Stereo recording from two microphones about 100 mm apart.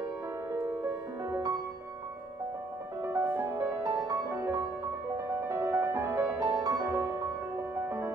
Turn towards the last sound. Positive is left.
turn(degrees=-30)  # may be behind; listen again after turning